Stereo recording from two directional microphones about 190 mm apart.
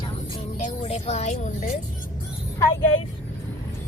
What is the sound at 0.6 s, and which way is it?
Speech, 35° left (ahead or behind).